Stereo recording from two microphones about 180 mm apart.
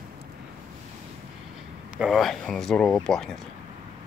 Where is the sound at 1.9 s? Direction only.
Centre (ahead or behind).